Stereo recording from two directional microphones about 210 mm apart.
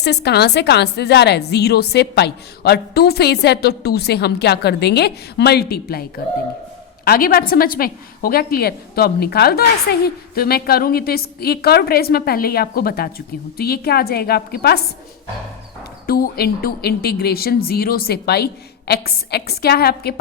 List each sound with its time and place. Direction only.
0.0 s a woman's voice: 50° left (ahead or behind)
16.0 s a woman's voice: 45° left (ahead or behind)